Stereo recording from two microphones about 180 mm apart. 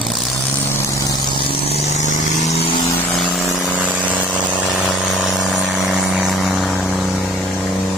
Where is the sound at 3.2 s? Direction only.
5° right (ahead or behind).